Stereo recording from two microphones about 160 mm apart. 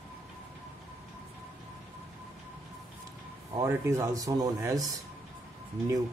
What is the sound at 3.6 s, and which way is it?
Speech, 20° right (ahead or behind).